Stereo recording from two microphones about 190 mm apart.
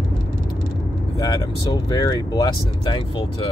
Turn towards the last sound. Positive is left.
turn(degrees=25)  # may be behind; listen again after turning